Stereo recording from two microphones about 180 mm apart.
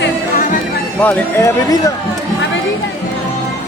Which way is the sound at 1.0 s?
15° left (ahead or behind).